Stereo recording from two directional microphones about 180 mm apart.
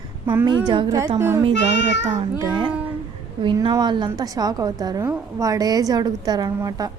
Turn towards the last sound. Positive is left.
turn(degrees=-20)  # may be behind; listen again after turning